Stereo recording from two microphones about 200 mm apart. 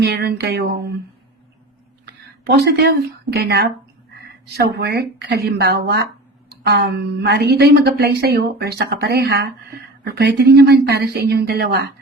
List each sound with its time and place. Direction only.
0.0 s a woman's voice: 55° right (ahead or behind)
2.5 s a woman's voice: 50° right (ahead or behind)